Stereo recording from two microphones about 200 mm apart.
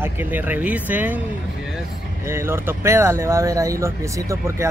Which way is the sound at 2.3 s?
10° right (ahead or behind).